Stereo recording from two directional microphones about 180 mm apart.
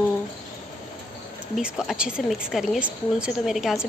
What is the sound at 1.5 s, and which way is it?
A woman's voice, 5° right (ahead or behind).